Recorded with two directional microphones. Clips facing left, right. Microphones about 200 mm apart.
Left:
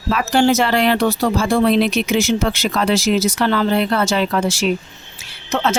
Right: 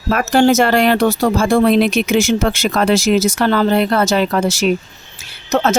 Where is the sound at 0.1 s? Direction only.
50° right (ahead or behind).